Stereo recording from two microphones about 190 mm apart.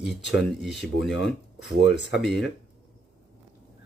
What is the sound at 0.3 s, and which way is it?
Speech, centre (ahead or behind).